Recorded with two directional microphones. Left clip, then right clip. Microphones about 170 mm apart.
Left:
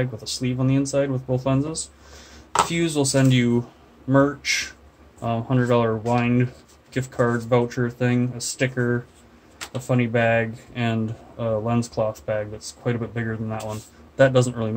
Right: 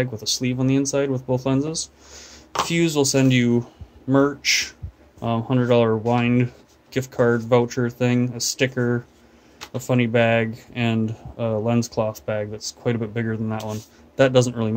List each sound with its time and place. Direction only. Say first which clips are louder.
0.0 s speech: right 3 dB; 50° right (ahead or behind)